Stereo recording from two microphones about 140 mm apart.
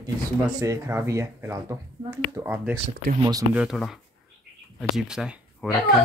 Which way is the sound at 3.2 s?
25° right (ahead or behind).